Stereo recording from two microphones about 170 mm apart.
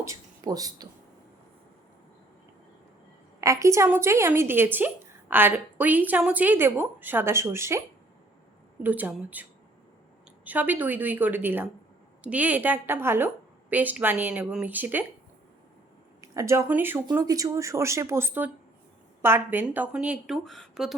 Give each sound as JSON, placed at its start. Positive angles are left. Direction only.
{"t": 0.0, "sound": "speech", "side_deg": -20}
{"t": 3.4, "sound": "a woman's voice", "side_deg": -15}
{"t": 16.2, "sound": "a woman's voice", "side_deg": -20}